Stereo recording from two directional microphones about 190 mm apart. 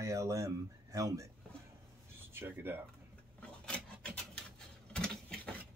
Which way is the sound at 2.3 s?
10° right (ahead or behind).